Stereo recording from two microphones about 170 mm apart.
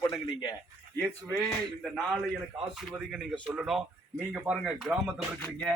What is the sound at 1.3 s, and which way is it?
Speech, centre (ahead or behind).